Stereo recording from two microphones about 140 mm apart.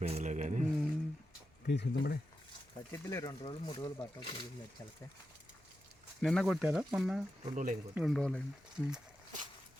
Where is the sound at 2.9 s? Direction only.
25° left (ahead or behind).